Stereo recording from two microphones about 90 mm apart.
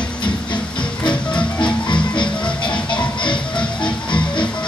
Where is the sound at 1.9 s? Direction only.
65° left (ahead or behind).